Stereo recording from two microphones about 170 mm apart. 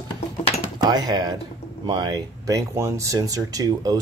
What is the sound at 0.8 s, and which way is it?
Speech, 25° right (ahead or behind).